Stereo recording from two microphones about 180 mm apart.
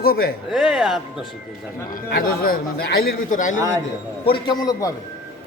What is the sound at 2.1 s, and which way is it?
A man's voice, 55° left (ahead or behind).